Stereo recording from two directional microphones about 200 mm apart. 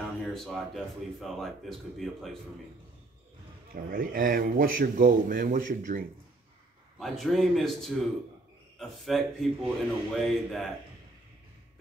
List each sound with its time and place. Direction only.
0.0 s a sound: centre (ahead or behind)
1.2 s a man's voice: centre (ahead or behind)
3.7 s speech: 45° right (ahead or behind)
7.0 s a man's voice: centre (ahead or behind)